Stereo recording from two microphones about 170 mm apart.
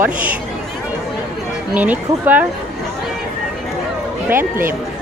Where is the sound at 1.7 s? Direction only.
10° right (ahead or behind).